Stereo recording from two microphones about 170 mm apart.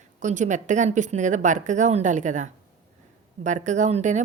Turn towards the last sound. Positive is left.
turn(degrees=-45)  # may be behind; listen again after turning